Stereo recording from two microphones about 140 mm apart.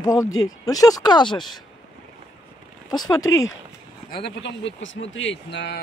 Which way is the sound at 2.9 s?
25° left (ahead or behind).